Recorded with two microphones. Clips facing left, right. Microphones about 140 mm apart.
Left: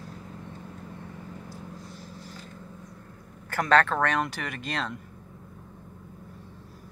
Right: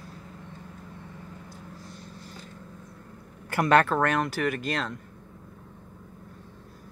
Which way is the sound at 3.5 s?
10° right (ahead or behind).